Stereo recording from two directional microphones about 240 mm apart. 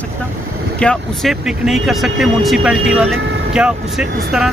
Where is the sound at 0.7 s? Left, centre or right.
Centre.